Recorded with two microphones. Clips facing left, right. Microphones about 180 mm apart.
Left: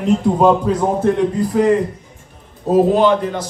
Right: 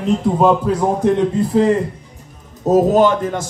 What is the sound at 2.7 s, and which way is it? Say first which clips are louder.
Speech: even; 45° right (ahead or behind).